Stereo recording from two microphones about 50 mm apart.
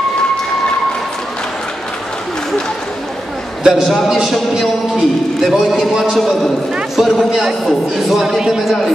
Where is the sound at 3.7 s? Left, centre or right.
Centre.